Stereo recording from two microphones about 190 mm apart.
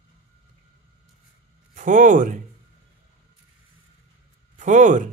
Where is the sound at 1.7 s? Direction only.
45° right (ahead or behind).